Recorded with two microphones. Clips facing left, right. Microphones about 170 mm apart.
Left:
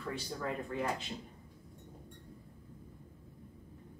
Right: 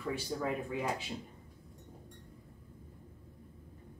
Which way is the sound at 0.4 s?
5° right (ahead or behind).